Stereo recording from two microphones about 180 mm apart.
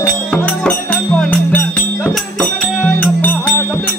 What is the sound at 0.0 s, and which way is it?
Music, 5° left (ahead or behind).